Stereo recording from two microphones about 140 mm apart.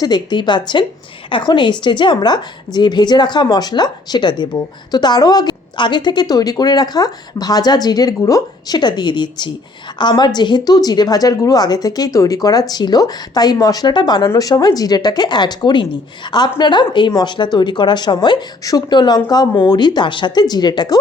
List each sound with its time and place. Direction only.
0.0 s a woman's voice: 30° left (ahead or behind)